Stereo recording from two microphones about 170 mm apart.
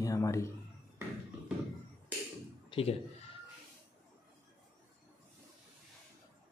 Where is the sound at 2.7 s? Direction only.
35° left (ahead or behind).